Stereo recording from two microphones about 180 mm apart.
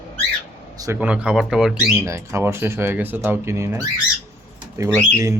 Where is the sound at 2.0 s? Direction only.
15° right (ahead or behind).